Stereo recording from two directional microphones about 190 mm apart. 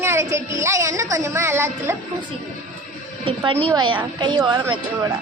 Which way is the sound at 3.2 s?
25° right (ahead or behind).